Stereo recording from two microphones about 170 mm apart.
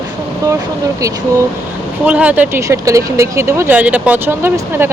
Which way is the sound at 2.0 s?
10° right (ahead or behind).